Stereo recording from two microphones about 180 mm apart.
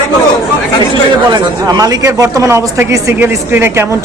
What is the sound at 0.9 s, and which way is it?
Speech, 25° right (ahead or behind).